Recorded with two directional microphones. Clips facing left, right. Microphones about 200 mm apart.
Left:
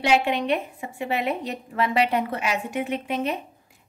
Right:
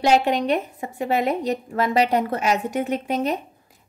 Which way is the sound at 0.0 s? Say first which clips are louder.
Right 3 dB; 40° right (ahead or behind).